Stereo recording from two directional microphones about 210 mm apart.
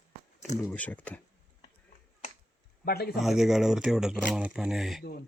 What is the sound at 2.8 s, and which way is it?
Speech, 45° left (ahead or behind).